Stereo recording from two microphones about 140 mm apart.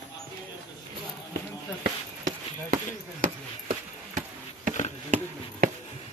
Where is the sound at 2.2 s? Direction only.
70° right (ahead or behind).